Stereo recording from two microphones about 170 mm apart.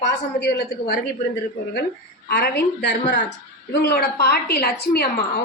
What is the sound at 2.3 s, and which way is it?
Speech, 70° left (ahead or behind).